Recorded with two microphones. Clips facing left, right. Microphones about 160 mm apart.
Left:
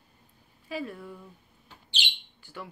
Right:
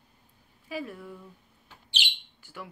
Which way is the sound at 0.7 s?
10° right (ahead or behind).